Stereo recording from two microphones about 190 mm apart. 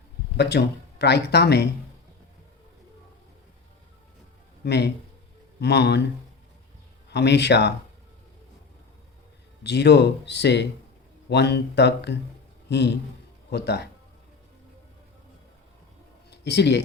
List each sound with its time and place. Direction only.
0.3 s speech: 60° left (ahead or behind)
4.6 s speech: 60° left (ahead or behind)
7.1 s speech: 65° left (ahead or behind)
9.6 s speech: 65° left (ahead or behind)
16.3 s speech: 60° left (ahead or behind)